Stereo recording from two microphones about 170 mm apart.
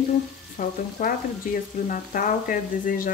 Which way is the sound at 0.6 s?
55° left (ahead or behind).